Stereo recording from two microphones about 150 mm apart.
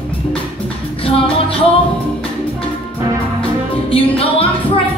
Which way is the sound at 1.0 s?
40° left (ahead or behind).